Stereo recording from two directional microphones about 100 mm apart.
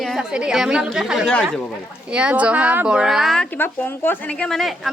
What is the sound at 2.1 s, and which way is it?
Speech, 10° right (ahead or behind).